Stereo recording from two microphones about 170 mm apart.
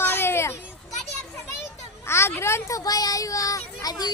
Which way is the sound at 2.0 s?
15° left (ahead or behind).